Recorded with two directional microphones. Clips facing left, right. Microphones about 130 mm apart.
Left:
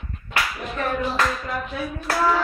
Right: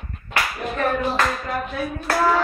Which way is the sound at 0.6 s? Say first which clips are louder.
Right 3 dB; 40° right (ahead or behind).